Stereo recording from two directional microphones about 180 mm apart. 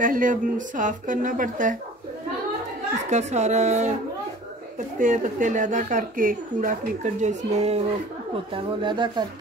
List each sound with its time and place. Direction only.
0.0 s a woman's voice: 45° right (ahead or behind)
3.1 s a woman's voice: 40° right (ahead or behind)